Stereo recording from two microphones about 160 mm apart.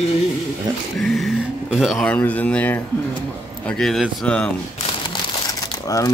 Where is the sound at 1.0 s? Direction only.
Centre (ahead or behind).